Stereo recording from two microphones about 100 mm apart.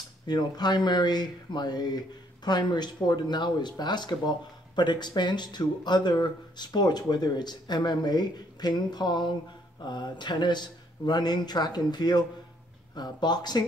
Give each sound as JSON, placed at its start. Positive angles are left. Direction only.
{"t": 0.3, "sound": "speech", "side_deg": 45}